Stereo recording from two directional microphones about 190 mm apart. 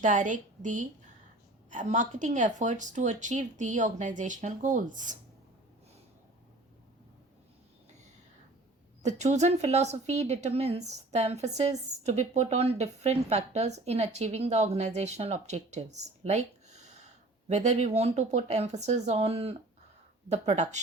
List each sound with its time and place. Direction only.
0.0 s speech: 40° right (ahead or behind)
9.0 s speech: 35° right (ahead or behind)